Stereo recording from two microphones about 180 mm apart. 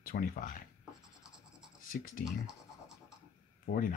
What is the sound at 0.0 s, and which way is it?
Speech, 55° left (ahead or behind).